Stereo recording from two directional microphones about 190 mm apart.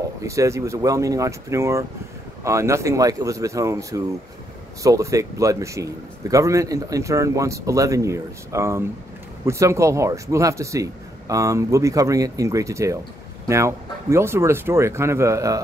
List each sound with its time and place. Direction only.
0.2 s speech: 15° right (ahead or behind)